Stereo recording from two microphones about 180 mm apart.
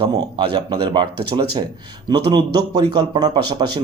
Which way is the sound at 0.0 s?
25° right (ahead or behind).